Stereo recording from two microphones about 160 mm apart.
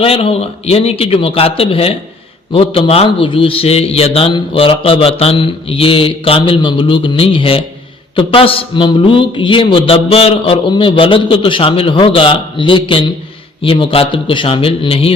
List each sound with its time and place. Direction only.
0.0 s a man's voice: 35° left (ahead or behind)